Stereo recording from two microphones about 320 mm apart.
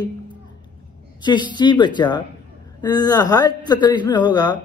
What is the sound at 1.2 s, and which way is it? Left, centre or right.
Speech, centre.